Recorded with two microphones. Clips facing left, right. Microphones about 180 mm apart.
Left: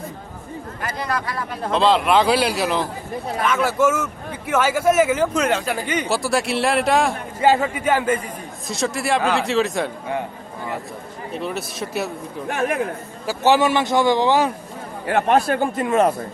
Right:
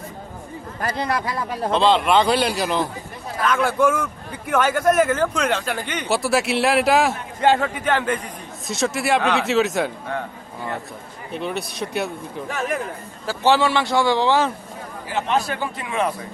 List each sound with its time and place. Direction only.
0.8 s speech: 25° right (ahead or behind)
1.7 s speech: centre (ahead or behind)
11.3 s speech: centre (ahead or behind)
12.5 s speech: 60° left (ahead or behind)
13.5 s a man's voice: 20° left (ahead or behind)
15.0 s a man's voice: 60° left (ahead or behind)